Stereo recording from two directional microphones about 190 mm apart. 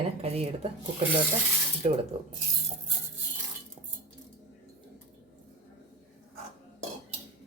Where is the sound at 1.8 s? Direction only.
35° right (ahead or behind).